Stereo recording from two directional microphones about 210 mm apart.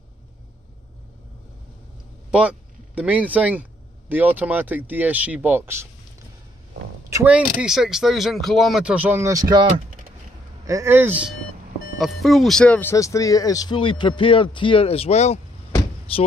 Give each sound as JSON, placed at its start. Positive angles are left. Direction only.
{"t": 2.3, "sound": "speech", "side_deg": -5}
{"t": 7.1, "sound": "speech", "side_deg": -10}